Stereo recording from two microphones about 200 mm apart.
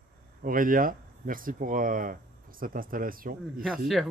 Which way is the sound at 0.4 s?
45° right (ahead or behind).